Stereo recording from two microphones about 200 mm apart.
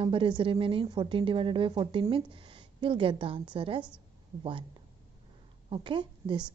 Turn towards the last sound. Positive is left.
turn(degrees=-25)  # may be behind; listen again after turning